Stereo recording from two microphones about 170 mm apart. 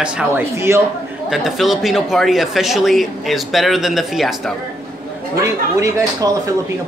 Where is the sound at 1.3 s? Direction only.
Centre (ahead or behind).